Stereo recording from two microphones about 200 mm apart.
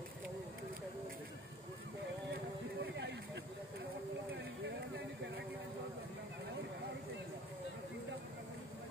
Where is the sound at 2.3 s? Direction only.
60° right (ahead or behind).